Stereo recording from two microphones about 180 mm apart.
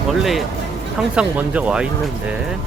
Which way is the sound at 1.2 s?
5° right (ahead or behind).